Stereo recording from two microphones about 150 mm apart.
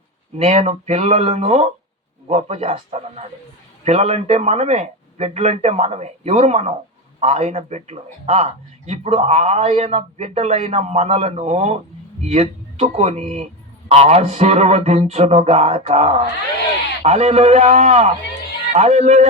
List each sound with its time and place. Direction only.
0.3 s a man's voice: 45° right (ahead or behind)